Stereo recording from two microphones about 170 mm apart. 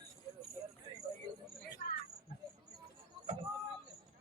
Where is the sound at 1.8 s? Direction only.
50° left (ahead or behind).